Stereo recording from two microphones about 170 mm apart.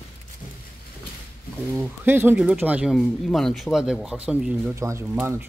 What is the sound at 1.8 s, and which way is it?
Speech, 10° right (ahead or behind).